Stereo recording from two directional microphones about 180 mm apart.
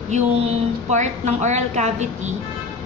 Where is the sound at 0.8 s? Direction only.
40° right (ahead or behind).